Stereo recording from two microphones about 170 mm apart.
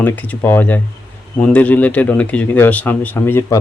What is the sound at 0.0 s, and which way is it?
Speech, 10° left (ahead or behind).